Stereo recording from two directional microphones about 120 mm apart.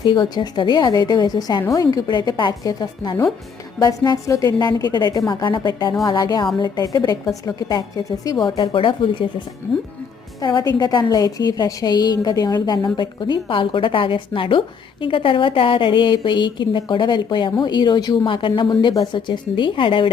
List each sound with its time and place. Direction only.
0.0 s a woman's voice: 35° left (ahead or behind)
10.4 s a woman's voice: 35° left (ahead or behind)